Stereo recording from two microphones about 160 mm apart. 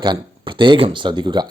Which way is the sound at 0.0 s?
30° right (ahead or behind).